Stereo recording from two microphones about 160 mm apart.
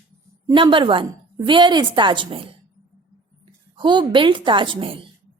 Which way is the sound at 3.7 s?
30° right (ahead or behind).